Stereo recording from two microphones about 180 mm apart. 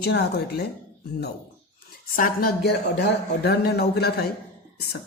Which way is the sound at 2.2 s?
55° left (ahead or behind).